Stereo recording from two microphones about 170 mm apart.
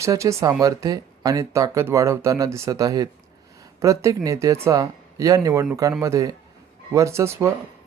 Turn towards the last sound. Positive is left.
turn(degrees=-15)  # may be behind; listen again after turning